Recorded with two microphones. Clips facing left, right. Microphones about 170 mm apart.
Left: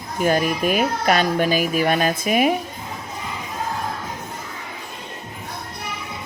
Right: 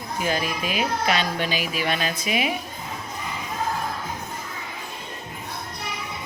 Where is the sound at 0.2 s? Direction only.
50° left (ahead or behind).